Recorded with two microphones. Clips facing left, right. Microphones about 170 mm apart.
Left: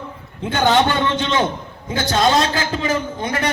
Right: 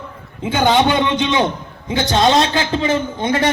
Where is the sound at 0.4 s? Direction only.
15° right (ahead or behind).